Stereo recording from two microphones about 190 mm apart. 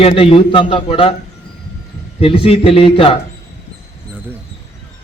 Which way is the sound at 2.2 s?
30° left (ahead or behind).